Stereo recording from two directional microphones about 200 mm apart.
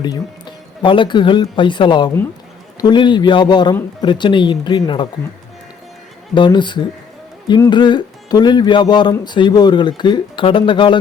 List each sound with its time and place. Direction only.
0.0 s speech: 20° left (ahead or behind)
6.3 s speech: 25° left (ahead or behind)